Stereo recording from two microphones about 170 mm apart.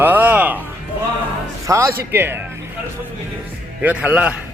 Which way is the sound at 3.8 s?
10° right (ahead or behind).